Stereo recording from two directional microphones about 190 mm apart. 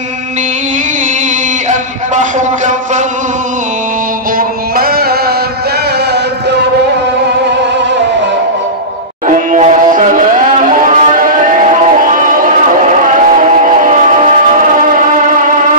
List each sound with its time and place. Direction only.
1.7 s a sound: 40° right (ahead or behind)
4.4 s music: 50° right (ahead or behind)
9.5 s music: 40° right (ahead or behind)